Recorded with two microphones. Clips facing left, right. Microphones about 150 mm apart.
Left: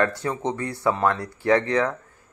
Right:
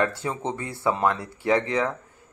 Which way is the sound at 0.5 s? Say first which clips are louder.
Left 2 dB; 25° right (ahead or behind).